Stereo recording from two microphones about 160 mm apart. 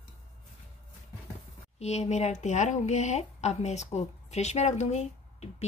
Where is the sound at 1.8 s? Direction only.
45° left (ahead or behind).